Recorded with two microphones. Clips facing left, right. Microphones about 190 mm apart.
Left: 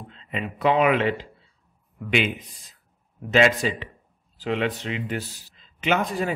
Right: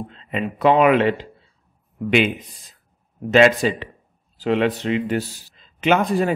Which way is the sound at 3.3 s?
60° right (ahead or behind).